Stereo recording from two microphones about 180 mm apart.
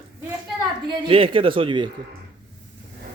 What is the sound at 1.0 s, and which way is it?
Speech, 30° right (ahead or behind).